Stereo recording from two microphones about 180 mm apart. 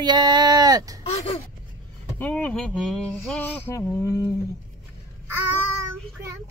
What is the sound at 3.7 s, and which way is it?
Speech, 15° left (ahead or behind).